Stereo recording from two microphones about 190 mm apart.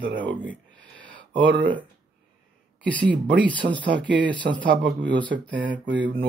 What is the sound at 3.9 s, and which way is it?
Speech, 70° right (ahead or behind).